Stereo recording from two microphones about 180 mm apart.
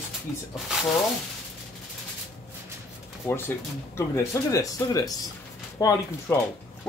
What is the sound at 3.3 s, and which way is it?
A man's voice, 10° left (ahead or behind).